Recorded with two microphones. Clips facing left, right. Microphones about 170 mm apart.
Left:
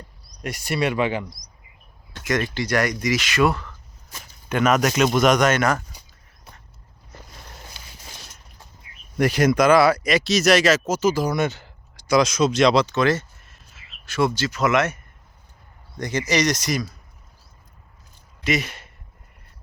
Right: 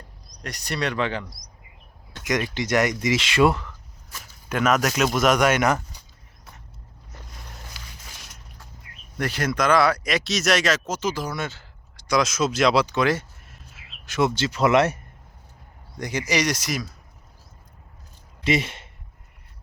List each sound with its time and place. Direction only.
0.4 s speech: 5° left (ahead or behind)
2.1 s speech: 15° right (ahead or behind)
4.4 s speech: centre (ahead or behind); by 5.8 s 15° right (ahead or behind)
7.8 s a sound: 25° left (ahead or behind)
9.1 s speech: 15° left (ahead or behind)
12.0 s speech: centre (ahead or behind); by 14.9 s 30° right (ahead or behind)
16.0 s speech: 10° right (ahead or behind)
18.4 s speech: 25° right (ahead or behind)